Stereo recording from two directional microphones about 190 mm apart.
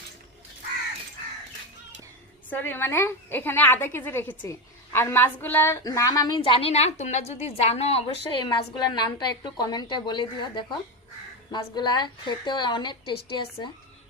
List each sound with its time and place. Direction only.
2.5 s a woman's voice: 10° left (ahead or behind)